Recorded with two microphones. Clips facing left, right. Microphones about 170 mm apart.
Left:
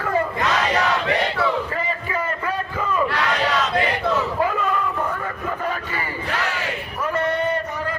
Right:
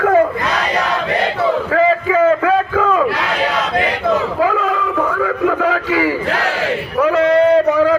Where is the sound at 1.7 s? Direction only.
90° right.